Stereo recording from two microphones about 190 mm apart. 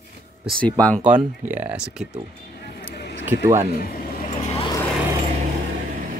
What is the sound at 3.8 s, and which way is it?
Speech, 50° left (ahead or behind).